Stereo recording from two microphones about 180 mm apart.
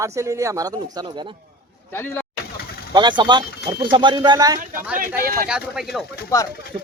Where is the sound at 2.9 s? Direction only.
25° right (ahead or behind).